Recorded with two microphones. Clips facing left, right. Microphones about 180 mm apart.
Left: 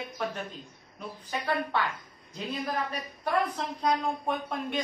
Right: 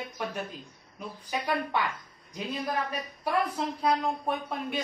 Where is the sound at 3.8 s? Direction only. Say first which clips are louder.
Even; 5° right (ahead or behind).